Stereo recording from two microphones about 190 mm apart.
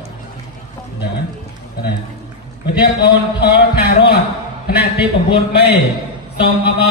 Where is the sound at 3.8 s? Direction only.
60° left (ahead or behind).